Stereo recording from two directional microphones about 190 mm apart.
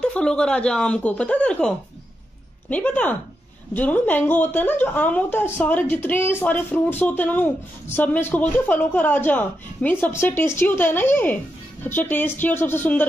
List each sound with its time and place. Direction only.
0.0 s speech: 5° left (ahead or behind)
2.7 s a woman's voice: 10° left (ahead or behind)